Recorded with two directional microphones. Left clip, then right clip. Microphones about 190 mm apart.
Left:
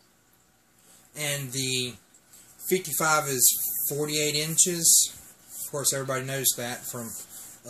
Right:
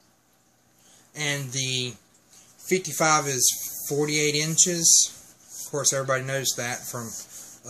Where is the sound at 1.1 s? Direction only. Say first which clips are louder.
Right 3 dB; 40° right (ahead or behind).